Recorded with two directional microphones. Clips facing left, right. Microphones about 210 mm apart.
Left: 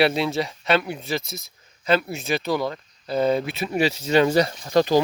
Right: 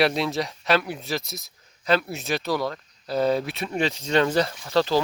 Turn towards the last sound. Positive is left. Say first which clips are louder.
# left 3 dB
turn(degrees=15)  # may be behind; listen again after turning